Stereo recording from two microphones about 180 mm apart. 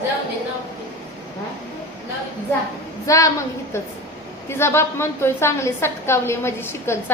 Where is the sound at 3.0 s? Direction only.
20° left (ahead or behind).